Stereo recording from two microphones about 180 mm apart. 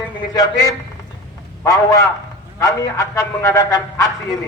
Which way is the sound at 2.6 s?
15° left (ahead or behind).